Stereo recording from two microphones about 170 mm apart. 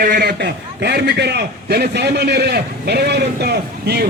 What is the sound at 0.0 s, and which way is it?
A man's voice, 60° right (ahead or behind).